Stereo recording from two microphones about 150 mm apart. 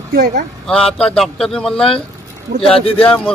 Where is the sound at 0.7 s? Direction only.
5° left (ahead or behind).